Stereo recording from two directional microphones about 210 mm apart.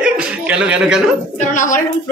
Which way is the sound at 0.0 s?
5° right (ahead or behind).